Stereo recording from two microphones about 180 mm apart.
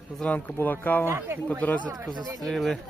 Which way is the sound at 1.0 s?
15° right (ahead or behind).